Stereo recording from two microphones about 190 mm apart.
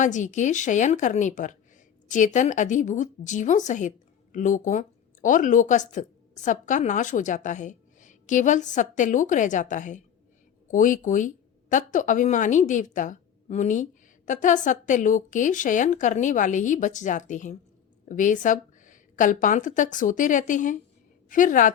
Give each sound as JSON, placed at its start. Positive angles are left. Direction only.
{"t": 0.0, "sound": "a woman's voice", "side_deg": 40}